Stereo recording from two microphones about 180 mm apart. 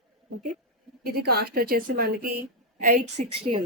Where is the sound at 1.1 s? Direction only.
60° right (ahead or behind).